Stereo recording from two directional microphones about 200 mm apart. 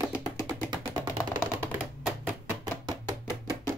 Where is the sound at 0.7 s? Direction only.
20° right (ahead or behind).